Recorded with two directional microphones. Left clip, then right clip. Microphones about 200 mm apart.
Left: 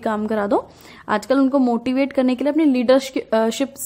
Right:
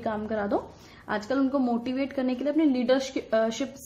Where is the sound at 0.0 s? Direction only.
50° left (ahead or behind).